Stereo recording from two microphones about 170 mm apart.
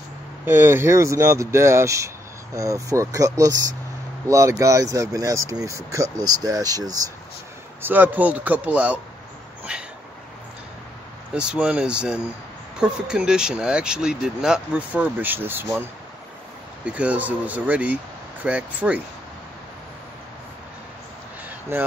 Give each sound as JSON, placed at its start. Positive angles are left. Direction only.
{"t": 0.5, "sound": "speech", "side_deg": -15}
{"t": 7.8, "sound": "speech", "side_deg": -10}
{"t": 9.7, "sound": "dog", "side_deg": -5}
{"t": 11.3, "sound": "speech", "side_deg": -5}